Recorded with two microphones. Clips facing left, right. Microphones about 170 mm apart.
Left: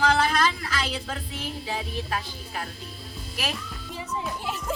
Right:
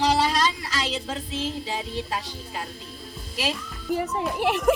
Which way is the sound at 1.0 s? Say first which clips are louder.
Right 3 dB; 20° right (ahead or behind).